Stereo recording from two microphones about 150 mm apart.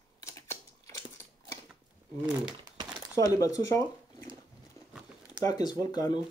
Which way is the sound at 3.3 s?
20° left (ahead or behind).